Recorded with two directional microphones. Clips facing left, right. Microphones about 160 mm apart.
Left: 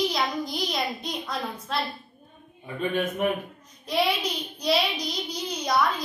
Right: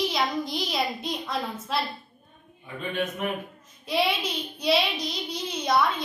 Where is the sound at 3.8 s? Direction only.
Centre (ahead or behind).